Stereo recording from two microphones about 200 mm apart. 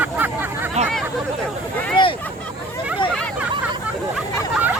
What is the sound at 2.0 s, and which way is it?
Speech, 25° left (ahead or behind).